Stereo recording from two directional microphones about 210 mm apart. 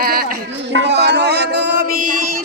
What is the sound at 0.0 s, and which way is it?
Music, 45° right (ahead or behind).